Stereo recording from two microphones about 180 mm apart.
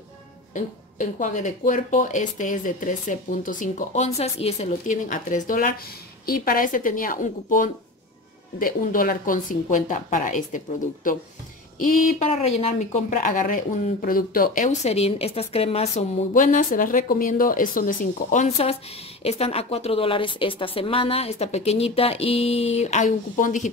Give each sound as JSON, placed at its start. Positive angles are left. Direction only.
{"t": 0.6, "sound": "speech", "side_deg": 45}
{"t": 11.8, "sound": "a woman's voice", "side_deg": 40}